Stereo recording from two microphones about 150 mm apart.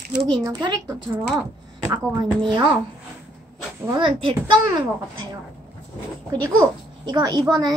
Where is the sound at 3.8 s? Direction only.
35° right (ahead or behind).